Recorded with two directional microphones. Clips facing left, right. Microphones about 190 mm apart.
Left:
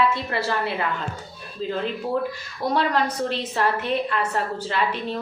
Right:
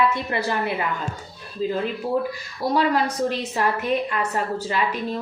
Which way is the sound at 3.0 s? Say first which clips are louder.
Right 1 dB; 10° right (ahead or behind).